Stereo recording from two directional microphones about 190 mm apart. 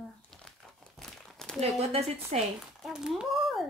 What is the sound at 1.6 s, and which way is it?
Speech, 35° right (ahead or behind).